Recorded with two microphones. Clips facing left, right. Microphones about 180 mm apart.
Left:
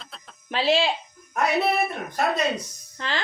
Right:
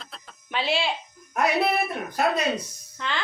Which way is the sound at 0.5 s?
35° left (ahead or behind).